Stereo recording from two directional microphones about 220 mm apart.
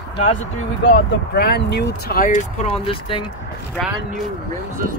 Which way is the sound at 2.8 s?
25° left (ahead or behind).